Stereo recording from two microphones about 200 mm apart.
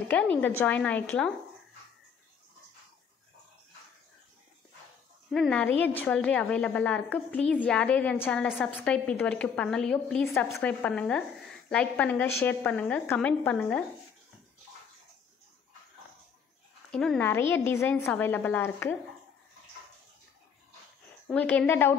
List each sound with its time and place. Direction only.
0.1 s a woman's voice: 5° left (ahead or behind)
5.3 s a woman's voice: 5° left (ahead or behind)
16.9 s a woman's voice: 5° left (ahead or behind)
21.3 s a woman's voice: 10° left (ahead or behind)